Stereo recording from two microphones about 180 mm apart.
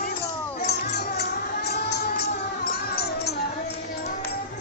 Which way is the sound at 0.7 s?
65° left (ahead or behind).